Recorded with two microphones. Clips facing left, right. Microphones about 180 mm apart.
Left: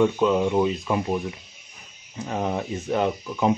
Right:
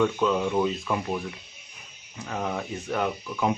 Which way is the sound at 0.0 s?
20° left (ahead or behind).